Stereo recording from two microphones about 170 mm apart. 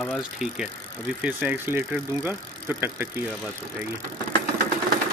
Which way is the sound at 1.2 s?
10° right (ahead or behind).